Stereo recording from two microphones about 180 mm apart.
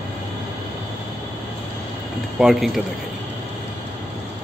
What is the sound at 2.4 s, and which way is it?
Speech, centre (ahead or behind).